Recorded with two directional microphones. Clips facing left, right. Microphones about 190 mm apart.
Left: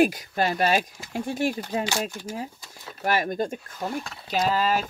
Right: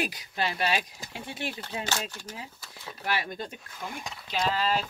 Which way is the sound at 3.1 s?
45° left (ahead or behind).